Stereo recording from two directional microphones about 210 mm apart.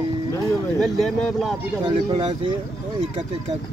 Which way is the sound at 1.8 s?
25° right (ahead or behind).